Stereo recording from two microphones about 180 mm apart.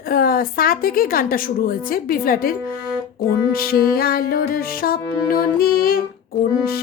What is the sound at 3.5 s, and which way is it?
Music, 55° left (ahead or behind).